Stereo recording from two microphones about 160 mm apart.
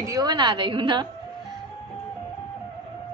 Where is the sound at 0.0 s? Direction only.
25° right (ahead or behind).